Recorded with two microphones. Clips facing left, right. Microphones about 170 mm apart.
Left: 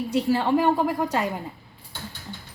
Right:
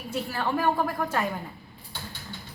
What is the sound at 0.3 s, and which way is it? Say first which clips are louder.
Speech: left 5 dB; 25° left (ahead or behind).